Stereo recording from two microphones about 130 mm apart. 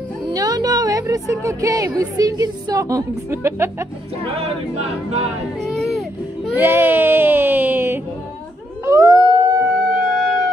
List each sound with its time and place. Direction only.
0.3 s a woman's voice: 30° right (ahead or behind)
4.4 s a capella: 55° right (ahead or behind)
5.8 s baby cry: centre (ahead or behind)
6.5 s speech: 15° right (ahead or behind)
8.8 s howl: 25° right (ahead or behind)
9.8 s music: 5° right (ahead or behind)